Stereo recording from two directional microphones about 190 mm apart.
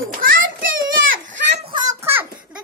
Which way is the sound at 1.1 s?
75° right (ahead or behind).